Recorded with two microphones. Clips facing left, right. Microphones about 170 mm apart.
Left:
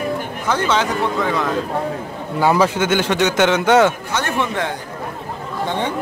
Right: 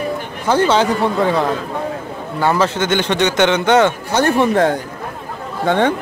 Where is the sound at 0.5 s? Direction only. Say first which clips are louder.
Right 5 dB; 30° right (ahead or behind).